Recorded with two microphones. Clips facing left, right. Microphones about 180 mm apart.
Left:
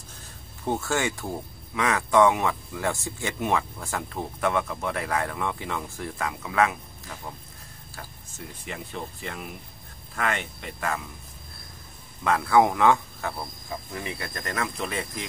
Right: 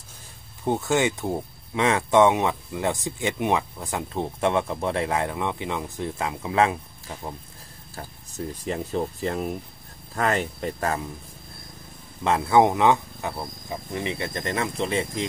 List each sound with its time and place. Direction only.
0.7 s speech: 20° right (ahead or behind)
8.6 s speech: 35° right (ahead or behind)
12.2 s speech: 25° right (ahead or behind)